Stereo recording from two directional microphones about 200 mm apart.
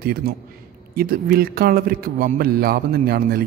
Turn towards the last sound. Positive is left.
turn(degrees=-50)  # may be behind; listen again after turning